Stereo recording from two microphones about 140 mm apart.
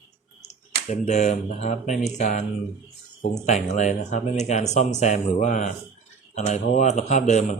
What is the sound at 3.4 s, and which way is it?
Speech, 55° left (ahead or behind).